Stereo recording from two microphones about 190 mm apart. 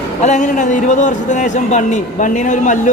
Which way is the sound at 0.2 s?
40° left (ahead or behind).